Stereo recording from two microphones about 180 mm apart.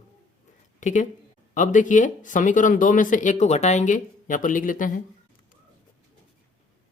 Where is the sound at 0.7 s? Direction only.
40° left (ahead or behind).